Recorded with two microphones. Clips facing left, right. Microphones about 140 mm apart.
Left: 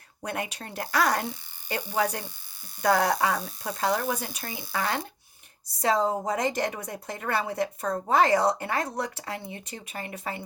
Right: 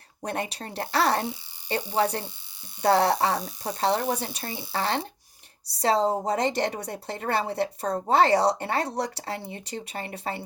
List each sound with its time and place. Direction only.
0.2 s a woman's voice: 35° right (ahead or behind)